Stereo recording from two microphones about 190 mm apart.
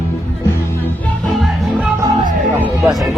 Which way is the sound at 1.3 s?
Centre (ahead or behind).